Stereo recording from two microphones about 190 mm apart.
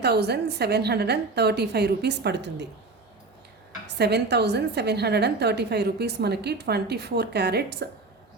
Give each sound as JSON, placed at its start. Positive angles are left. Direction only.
{"t": 0.0, "sound": "a woman's voice", "side_deg": -60}
{"t": 3.8, "sound": "a woman's voice", "side_deg": -60}